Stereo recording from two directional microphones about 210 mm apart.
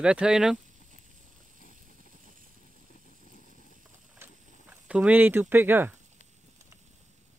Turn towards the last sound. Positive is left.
turn(degrees=-10)  # may be behind; listen again after turning